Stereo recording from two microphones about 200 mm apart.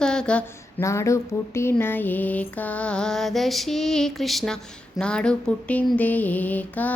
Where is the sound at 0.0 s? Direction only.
5° left (ahead or behind).